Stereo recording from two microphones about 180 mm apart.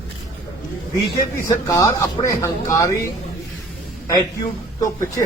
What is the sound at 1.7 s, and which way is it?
Speech, 20° left (ahead or behind).